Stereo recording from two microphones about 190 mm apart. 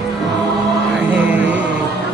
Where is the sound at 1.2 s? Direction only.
10° right (ahead or behind).